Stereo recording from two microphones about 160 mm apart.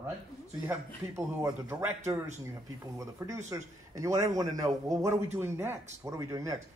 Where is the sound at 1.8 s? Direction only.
10° right (ahead or behind).